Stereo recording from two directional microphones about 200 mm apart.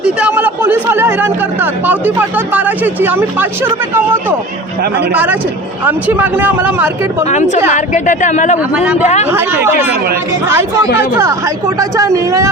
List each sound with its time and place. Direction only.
0.0 s a woman's voice: 5° right (ahead or behind)
7.7 s speech: 40° left (ahead or behind)
8.7 s a woman's voice: 5° right (ahead or behind)